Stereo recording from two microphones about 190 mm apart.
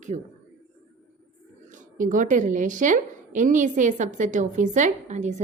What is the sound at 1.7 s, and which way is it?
A woman's voice, 45° right (ahead or behind).